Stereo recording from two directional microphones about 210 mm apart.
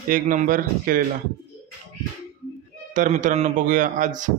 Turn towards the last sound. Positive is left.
turn(degrees=-35)  # may be behind; listen again after turning